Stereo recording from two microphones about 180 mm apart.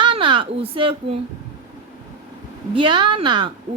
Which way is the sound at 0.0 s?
30° right (ahead or behind).